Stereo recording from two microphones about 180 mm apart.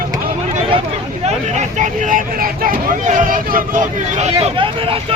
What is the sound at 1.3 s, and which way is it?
Speech, 40° right (ahead or behind).